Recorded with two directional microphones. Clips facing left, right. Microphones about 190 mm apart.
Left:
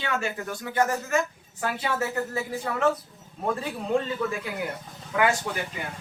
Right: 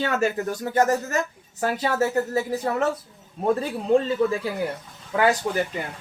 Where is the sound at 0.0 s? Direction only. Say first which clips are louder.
Right 6 dB; 40° right (ahead or behind).